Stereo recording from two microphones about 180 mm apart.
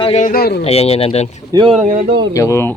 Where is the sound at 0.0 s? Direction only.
40° left (ahead or behind); by 0.6 s 60° left (ahead or behind).